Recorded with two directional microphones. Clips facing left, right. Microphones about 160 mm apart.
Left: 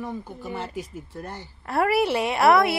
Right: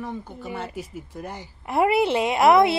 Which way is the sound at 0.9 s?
10° right (ahead or behind).